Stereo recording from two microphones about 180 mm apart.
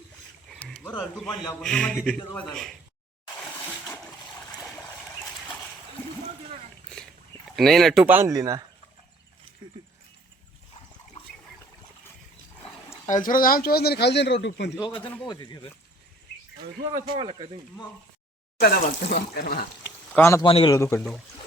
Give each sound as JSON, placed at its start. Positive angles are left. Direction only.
{"t": 0.6, "sound": "speech", "side_deg": 10}
{"t": 3.7, "sound": "splash", "side_deg": 5}
{"t": 7.5, "sound": "speech", "side_deg": 0}
{"t": 9.6, "sound": "a sound", "side_deg": -25}
{"t": 13.1, "sound": "speech", "side_deg": 45}
{"t": 14.8, "sound": "a man's voice", "side_deg": 25}
{"t": 15.0, "sound": "a man's voice", "side_deg": 10}
{"t": 15.3, "sound": "a man's voice", "side_deg": 25}
{"t": 17.2, "sound": "speech", "side_deg": -25}
{"t": 18.6, "sound": "speech", "side_deg": 60}
{"t": 20.1, "sound": "a man's voice", "side_deg": 15}
{"t": 20.4, "sound": "a man's voice", "side_deg": 30}
{"t": 20.7, "sound": "a man's voice", "side_deg": 15}